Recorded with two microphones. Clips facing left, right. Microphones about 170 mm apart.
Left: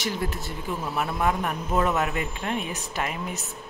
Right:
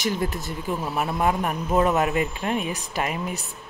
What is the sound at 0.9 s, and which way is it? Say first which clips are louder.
A man's voice: right 2 dB; 20° right (ahead or behind).